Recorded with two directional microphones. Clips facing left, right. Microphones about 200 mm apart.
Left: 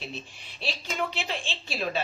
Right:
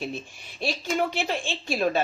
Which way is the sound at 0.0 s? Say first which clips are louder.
Right 6 dB; 50° right (ahead or behind).